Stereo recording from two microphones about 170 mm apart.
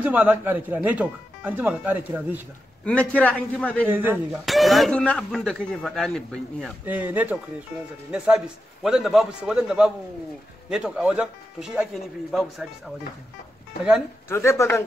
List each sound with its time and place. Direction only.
0.0 s speech: 10° right (ahead or behind)
2.8 s a man's voice: 5° left (ahead or behind)
3.8 s speech: 10° right (ahead or behind)
4.5 s speech: centre (ahead or behind)
6.8 s speech: 10° right (ahead or behind)
8.8 s speech: 5° right (ahead or behind)
14.3 s a man's voice: 15° left (ahead or behind)